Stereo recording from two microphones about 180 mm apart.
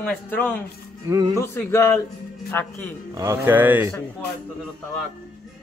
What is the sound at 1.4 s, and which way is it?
Speech, 15° left (ahead or behind).